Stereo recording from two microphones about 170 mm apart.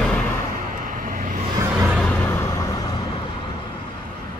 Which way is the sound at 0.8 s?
50° right (ahead or behind).